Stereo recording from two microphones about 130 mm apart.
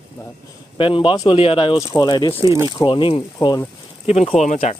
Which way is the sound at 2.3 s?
20° right (ahead or behind).